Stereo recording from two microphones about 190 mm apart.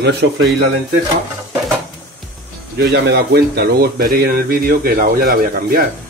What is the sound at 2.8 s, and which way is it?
Speech, 60° right (ahead or behind).